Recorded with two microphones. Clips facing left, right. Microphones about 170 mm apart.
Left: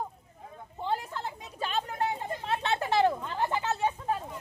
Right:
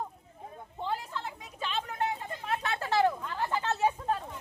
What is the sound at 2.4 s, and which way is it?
Chatter, 25° left (ahead or behind).